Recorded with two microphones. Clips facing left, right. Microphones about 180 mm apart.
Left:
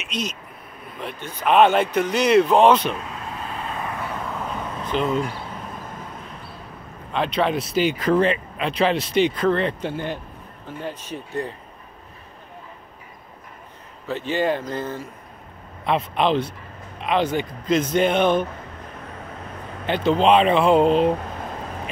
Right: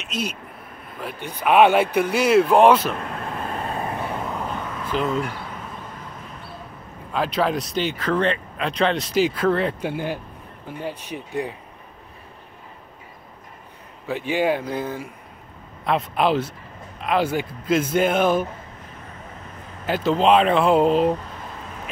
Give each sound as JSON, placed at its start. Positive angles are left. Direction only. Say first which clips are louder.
{"t": 0.1, "sound": "speech", "louder": "right 1 dB", "side_deg": -10}
{"t": 3.0, "sound": "vehicle", "louder": "right 3 dB", "side_deg": -55}
{"t": 3.8, "sound": "vehicle", "louder": "right 2 dB", "side_deg": -30}
{"t": 4.9, "sound": "speech", "louder": "left 1 dB", "side_deg": 0}
{"t": 7.1, "sound": "speech", "louder": "even", "side_deg": 0}
{"t": 7.8, "sound": "speech", "louder": "left 4 dB", "side_deg": 10}
{"t": 14.0, "sound": "speech", "louder": "right 1 dB", "side_deg": -10}
{"t": 15.8, "sound": "speech", "louder": "even", "side_deg": 0}
{"t": 19.9, "sound": "speech", "louder": "left 1 dB", "side_deg": 0}